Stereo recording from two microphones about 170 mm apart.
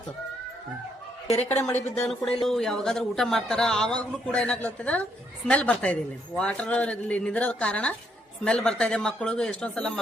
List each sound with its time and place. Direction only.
1.3 s a woman's voice: 35° left (ahead or behind)
1.7 s a man's voice: 5° left (ahead or behind)